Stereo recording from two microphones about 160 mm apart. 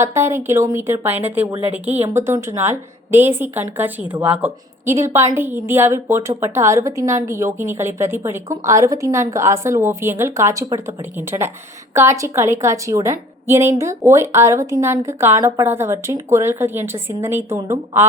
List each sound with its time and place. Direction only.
0.0 s a woman's voice: 15° right (ahead or behind)